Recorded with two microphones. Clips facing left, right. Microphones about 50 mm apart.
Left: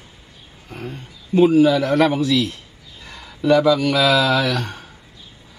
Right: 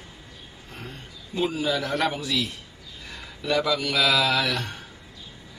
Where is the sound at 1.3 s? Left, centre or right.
Left.